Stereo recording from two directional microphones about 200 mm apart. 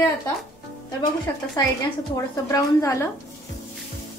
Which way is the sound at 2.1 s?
15° left (ahead or behind).